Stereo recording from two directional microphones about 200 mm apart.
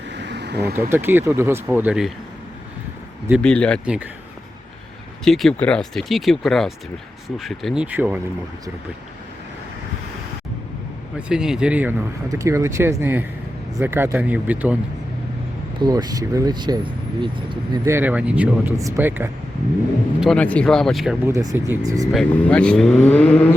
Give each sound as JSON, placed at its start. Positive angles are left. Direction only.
{"t": 0.1, "sound": "vehicle", "side_deg": -60}
{"t": 0.8, "sound": "speech", "side_deg": -10}
{"t": 3.4, "sound": "speech", "side_deg": 5}
{"t": 5.2, "sound": "speech", "side_deg": 0}
{"t": 11.3, "sound": "speech", "side_deg": -5}
{"t": 15.8, "sound": "speech", "side_deg": -20}
{"t": 20.1, "sound": "speech", "side_deg": 0}
{"t": 21.2, "sound": "speech", "side_deg": -10}
{"t": 22.1, "sound": "speech", "side_deg": 5}